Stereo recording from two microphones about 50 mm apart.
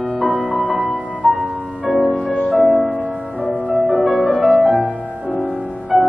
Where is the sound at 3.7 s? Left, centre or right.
Right.